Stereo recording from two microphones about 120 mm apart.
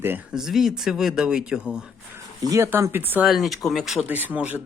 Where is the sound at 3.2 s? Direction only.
Centre (ahead or behind).